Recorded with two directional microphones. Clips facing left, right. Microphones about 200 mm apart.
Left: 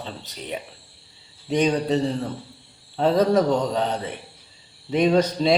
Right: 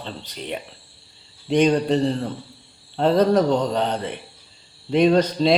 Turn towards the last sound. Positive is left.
turn(degrees=5)  # may be behind; listen again after turning